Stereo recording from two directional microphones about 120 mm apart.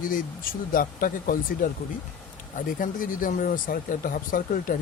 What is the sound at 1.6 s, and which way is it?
Speech, 90° left.